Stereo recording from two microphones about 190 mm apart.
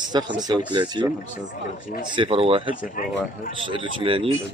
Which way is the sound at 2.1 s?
25° right (ahead or behind).